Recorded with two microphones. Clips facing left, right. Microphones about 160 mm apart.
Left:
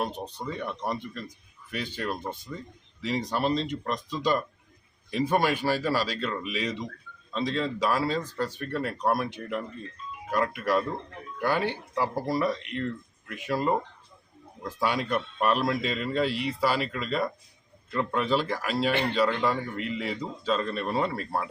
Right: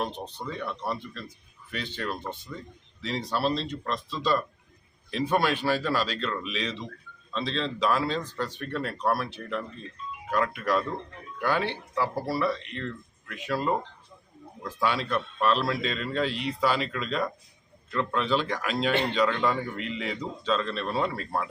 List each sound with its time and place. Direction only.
0.0 s a man's voice: 10° left (ahead or behind)